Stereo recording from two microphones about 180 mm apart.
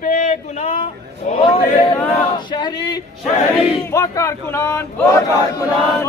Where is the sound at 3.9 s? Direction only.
15° left (ahead or behind).